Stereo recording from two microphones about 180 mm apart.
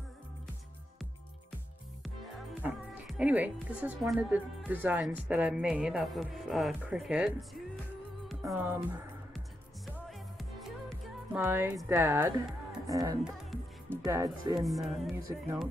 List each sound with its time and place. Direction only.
2.6 s a woman's voice: 5° right (ahead or behind)
8.3 s music: 5° right (ahead or behind)
11.3 s speech: 10° right (ahead or behind)
12.8 s music: 20° right (ahead or behind)
13.2 s music: centre (ahead or behind)
14.0 s speech: 20° right (ahead or behind)
14.5 s a woman's voice: centre (ahead or behind)
15.2 s speech: 15° right (ahead or behind)